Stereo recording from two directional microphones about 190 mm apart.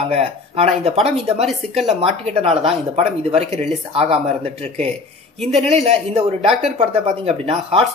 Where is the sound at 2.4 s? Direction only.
30° right (ahead or behind).